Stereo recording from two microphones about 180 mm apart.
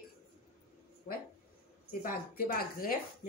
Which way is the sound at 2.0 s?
50° left (ahead or behind).